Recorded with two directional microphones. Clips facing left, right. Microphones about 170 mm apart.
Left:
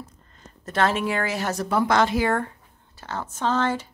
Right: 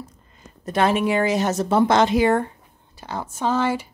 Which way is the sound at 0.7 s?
15° right (ahead or behind).